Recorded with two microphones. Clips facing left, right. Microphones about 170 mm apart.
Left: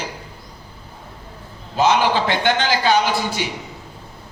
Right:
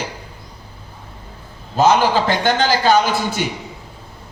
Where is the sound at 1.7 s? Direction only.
45° right (ahead or behind).